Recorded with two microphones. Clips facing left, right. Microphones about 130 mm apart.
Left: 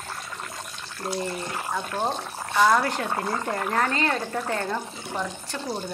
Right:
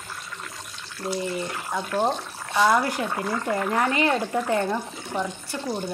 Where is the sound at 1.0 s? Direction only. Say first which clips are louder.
Right 1 dB; 45° left (ahead or behind).